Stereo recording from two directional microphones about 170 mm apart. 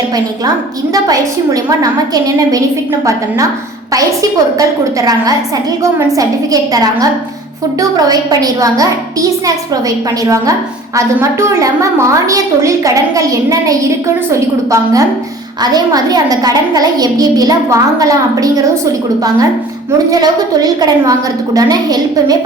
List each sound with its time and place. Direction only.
1.0 s a woman's voice: 20° right (ahead or behind)
3.9 s a woman's voice: 20° right (ahead or behind)